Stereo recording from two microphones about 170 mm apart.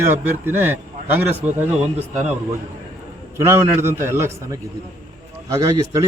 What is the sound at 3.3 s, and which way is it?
A man's voice, 15° right (ahead or behind).